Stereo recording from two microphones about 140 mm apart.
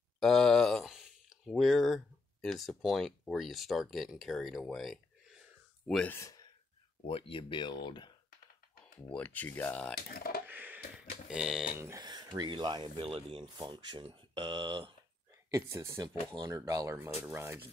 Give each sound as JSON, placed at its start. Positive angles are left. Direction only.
{"t": 0.2, "sound": "speech", "side_deg": 5}
{"t": 6.1, "sound": "speech", "side_deg": 20}
{"t": 7.1, "sound": "speech", "side_deg": 40}
{"t": 9.1, "sound": "speech", "side_deg": 10}
{"t": 10.1, "sound": "a sound", "side_deg": 90}
{"t": 10.4, "sound": "a sound", "side_deg": -10}
{"t": 11.2, "sound": "speech", "side_deg": -5}
{"t": 11.8, "sound": "speech", "side_deg": -25}
{"t": 15.5, "sound": "speech", "side_deg": -20}